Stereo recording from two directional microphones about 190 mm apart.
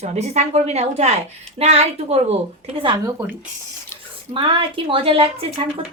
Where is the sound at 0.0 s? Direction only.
35° right (ahead or behind).